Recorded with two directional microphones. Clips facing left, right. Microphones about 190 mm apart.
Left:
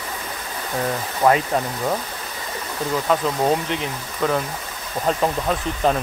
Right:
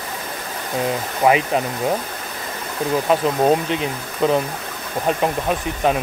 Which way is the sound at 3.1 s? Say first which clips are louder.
Right 3 dB; 20° right (ahead or behind).